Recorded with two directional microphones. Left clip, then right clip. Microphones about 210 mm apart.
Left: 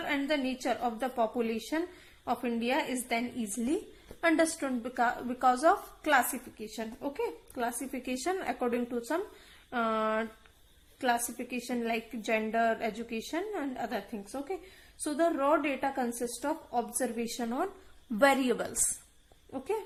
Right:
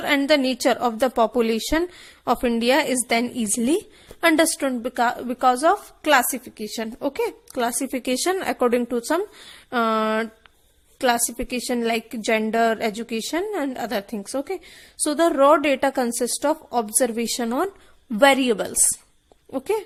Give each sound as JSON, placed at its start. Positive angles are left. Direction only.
{"t": 0.1, "sound": "a woman's voice", "side_deg": -40}
{"t": 18.1, "sound": "a woman's voice", "side_deg": -30}